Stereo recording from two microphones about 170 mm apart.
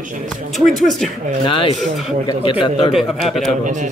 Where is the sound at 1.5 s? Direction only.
30° left (ahead or behind).